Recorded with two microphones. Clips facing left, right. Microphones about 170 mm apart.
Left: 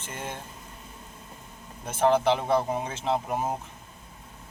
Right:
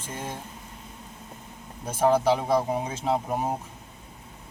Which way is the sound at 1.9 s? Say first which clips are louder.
Right 1 dB; 10° right (ahead or behind).